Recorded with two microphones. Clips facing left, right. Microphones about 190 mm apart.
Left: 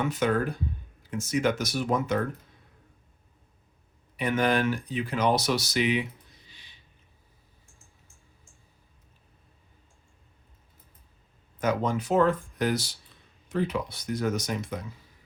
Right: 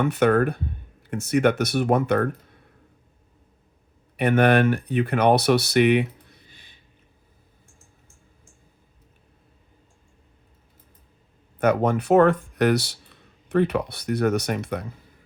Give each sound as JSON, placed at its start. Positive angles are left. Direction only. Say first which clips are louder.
{"t": 0.0, "sound": "speech", "louder": "right 7 dB", "side_deg": -60}
{"t": 4.2, "sound": "speech", "louder": "right 7 dB", "side_deg": -65}
{"t": 11.6, "sound": "speech", "louder": "right 6 dB", "side_deg": -60}